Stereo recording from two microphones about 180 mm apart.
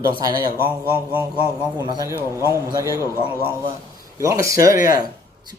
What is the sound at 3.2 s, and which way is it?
Speech, 15° left (ahead or behind).